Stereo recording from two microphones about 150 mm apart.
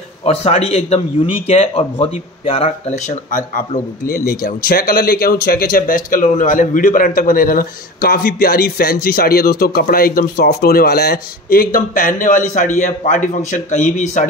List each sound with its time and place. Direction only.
0.2 s a man's voice: 40° left (ahead or behind)